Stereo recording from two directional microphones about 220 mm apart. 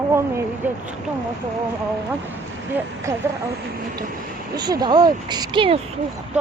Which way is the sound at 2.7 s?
10° right (ahead or behind).